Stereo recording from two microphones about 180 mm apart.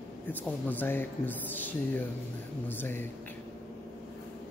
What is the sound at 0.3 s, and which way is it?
Speech, 10° left (ahead or behind).